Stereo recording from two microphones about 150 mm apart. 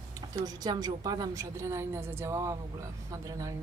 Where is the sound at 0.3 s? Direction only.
25° right (ahead or behind).